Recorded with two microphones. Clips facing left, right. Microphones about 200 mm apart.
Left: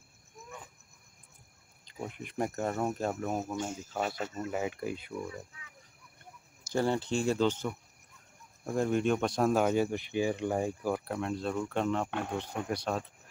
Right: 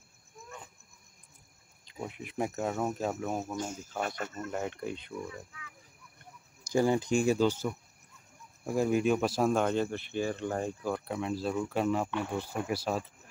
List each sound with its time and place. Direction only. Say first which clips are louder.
1.9 s speech: even; centre (ahead or behind)
6.7 s speech: right 3 dB; 10° right (ahead or behind); by 11.1 s 10° left (ahead or behind)
11.1 s speech: right 1 dB; 5° right (ahead or behind)